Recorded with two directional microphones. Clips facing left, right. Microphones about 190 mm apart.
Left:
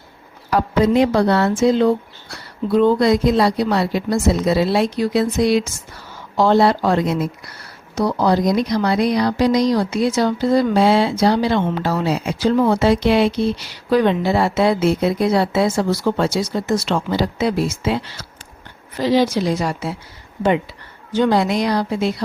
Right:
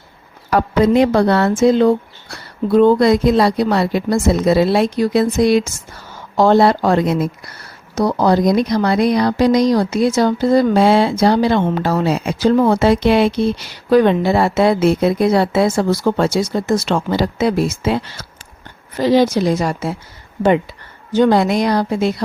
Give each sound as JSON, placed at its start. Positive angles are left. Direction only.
{"t": 0.5, "sound": "speech", "side_deg": -55}
{"t": 21.1, "sound": "speech", "side_deg": -50}